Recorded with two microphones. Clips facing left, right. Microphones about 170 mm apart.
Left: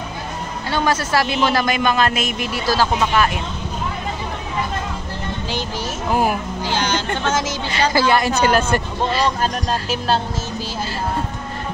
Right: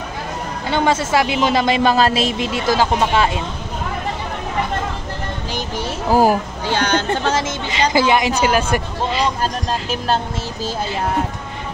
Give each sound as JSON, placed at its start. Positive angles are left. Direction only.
{"t": 0.7, "sound": "speech", "side_deg": -20}
{"t": 6.0, "sound": "speech", "side_deg": -35}
{"t": 6.6, "sound": "speech", "side_deg": -60}
{"t": 7.2, "sound": "speech", "side_deg": -30}